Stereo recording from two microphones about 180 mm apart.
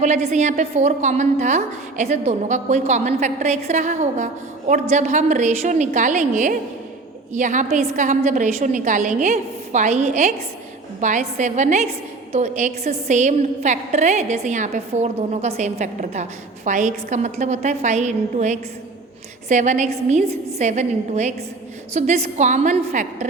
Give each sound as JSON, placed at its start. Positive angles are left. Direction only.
{"t": 0.0, "sound": "a woman's voice", "side_deg": -40}